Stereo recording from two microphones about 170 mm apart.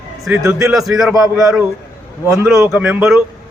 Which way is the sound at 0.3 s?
20° right (ahead or behind).